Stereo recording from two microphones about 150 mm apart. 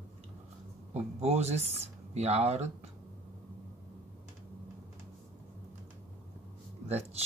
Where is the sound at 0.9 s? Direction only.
45° right (ahead or behind).